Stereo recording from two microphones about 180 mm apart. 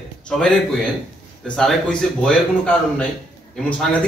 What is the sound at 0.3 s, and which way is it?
Speech, 5° left (ahead or behind).